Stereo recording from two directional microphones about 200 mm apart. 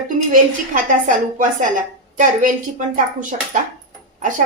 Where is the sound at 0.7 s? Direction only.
40° right (ahead or behind).